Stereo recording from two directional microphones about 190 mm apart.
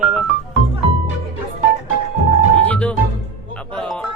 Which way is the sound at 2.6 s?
5° left (ahead or behind).